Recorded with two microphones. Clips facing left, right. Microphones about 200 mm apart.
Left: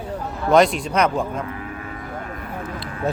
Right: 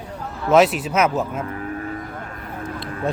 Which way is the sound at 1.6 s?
40° right (ahead or behind).